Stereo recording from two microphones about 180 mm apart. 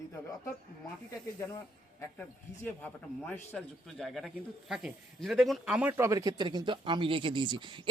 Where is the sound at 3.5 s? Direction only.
Centre (ahead or behind); by 7.8 s 25° right (ahead or behind).